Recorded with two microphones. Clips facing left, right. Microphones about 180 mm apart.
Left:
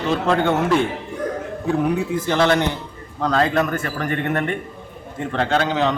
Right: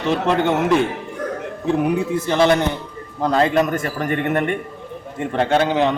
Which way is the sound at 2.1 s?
15° right (ahead or behind).